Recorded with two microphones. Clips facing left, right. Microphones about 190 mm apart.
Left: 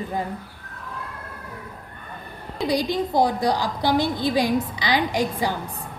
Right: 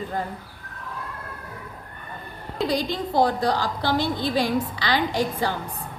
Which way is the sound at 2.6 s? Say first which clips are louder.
Left 2 dB; 15° left (ahead or behind).